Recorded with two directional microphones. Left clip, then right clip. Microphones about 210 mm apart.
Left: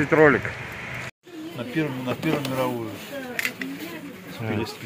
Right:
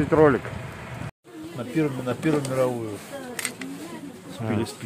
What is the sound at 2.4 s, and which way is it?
Speech, 45° right (ahead or behind).